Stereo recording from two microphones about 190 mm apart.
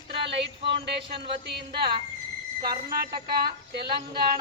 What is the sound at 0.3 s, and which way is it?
Speech, 65° right (ahead or behind).